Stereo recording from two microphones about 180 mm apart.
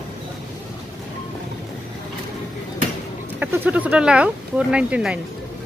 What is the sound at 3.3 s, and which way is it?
Speech, 10° right (ahead or behind).